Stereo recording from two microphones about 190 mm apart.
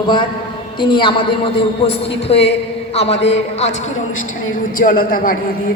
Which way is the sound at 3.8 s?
90° left.